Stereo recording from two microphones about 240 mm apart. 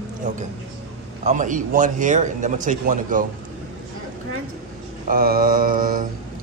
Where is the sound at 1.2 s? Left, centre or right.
Right.